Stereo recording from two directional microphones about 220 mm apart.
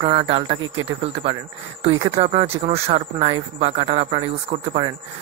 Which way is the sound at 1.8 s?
25° right (ahead or behind).